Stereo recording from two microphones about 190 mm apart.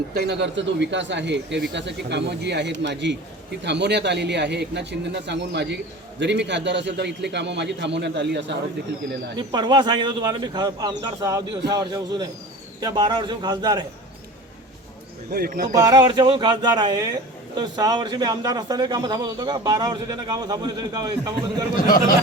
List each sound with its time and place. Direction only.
0.1 s a man's voice: 60° right (ahead or behind)
9.4 s a man's voice: 20° right (ahead or behind)
15.3 s speech: 50° right (ahead or behind)
15.6 s a man's voice: 20° right (ahead or behind)
21.8 s speech: 45° left (ahead or behind)